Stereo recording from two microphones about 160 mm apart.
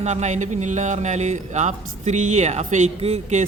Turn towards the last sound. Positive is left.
turn(degrees=-45)  # may be behind; listen again after turning